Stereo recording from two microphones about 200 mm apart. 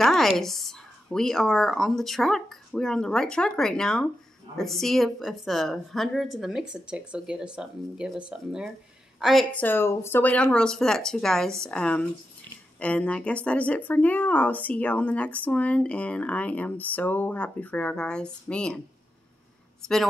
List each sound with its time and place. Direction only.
0.0 s a woman's voice: centre (ahead or behind)